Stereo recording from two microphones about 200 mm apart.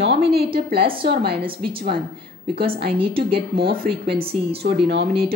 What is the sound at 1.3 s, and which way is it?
Speech, 25° right (ahead or behind).